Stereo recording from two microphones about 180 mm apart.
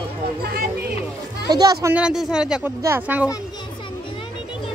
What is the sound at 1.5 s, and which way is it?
Speech, 20° right (ahead or behind).